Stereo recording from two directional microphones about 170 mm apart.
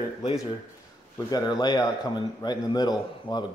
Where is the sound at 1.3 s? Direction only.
25° left (ahead or behind).